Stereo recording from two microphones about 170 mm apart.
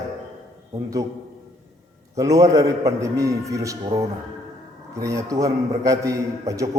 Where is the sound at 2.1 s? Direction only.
20° right (ahead or behind).